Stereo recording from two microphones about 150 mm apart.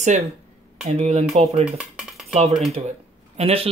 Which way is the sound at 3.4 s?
40° right (ahead or behind).